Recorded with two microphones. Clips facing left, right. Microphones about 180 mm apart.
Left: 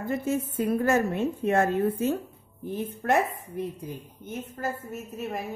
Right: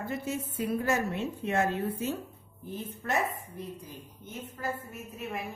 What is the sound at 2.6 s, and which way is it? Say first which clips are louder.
Speech: left 7 dB; 60° left (ahead or behind).